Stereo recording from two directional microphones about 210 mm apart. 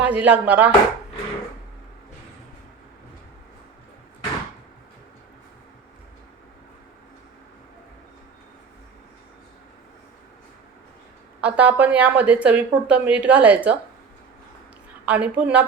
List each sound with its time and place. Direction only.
0.0 s a woman's voice: 5° right (ahead or behind)
11.3 s a woman's voice: 5° right (ahead or behind)
15.0 s a woman's voice: 5° right (ahead or behind)